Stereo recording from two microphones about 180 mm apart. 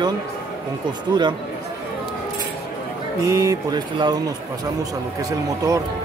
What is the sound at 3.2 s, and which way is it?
Speech, 20° right (ahead or behind).